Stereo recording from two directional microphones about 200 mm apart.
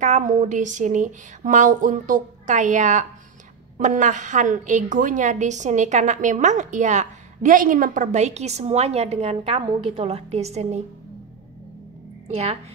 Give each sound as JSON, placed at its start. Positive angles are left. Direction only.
{"t": 0.0, "sound": "a woman's voice", "side_deg": -40}